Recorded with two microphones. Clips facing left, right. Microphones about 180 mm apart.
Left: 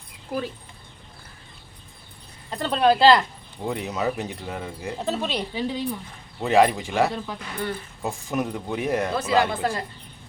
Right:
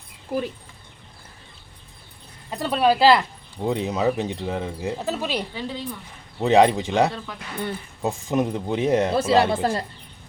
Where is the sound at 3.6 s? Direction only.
20° right (ahead or behind).